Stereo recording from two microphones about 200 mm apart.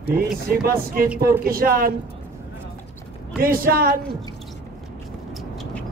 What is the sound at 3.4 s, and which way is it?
Speech, 45° right (ahead or behind).